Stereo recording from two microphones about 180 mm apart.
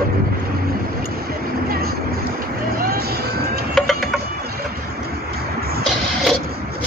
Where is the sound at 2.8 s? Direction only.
60° right (ahead or behind).